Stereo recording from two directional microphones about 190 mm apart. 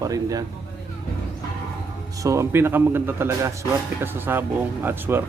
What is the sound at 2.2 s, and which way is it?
A man's voice, 15° right (ahead or behind).